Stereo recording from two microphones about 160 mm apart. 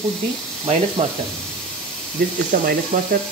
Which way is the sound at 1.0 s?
40° right (ahead or behind).